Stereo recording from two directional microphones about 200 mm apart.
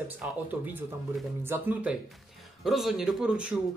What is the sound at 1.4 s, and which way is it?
Speech, 10° right (ahead or behind).